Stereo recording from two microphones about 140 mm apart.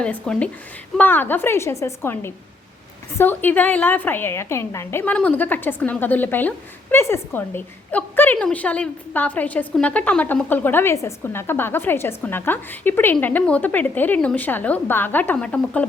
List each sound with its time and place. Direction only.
0.0 s a woman's voice: 10° left (ahead or behind)